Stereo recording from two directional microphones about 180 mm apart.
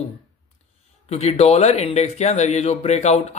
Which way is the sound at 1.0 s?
35° left (ahead or behind).